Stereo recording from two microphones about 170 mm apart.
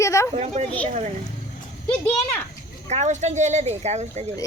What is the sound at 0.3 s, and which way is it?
Speech, 40° right (ahead or behind).